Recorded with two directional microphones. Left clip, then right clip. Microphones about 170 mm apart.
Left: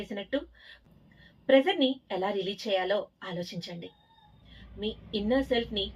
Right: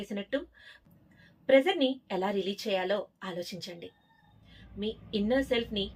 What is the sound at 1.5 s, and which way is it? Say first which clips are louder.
A woman's voice: left 1 dB; 5° right (ahead or behind).